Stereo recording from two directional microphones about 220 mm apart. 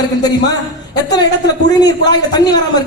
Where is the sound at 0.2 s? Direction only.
20° left (ahead or behind).